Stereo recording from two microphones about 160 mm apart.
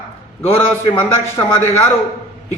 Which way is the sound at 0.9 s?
15° left (ahead or behind).